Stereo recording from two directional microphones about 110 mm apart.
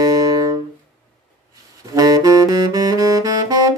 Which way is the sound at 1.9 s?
35° right (ahead or behind).